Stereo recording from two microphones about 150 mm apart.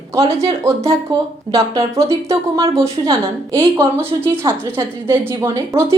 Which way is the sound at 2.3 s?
20° right (ahead or behind).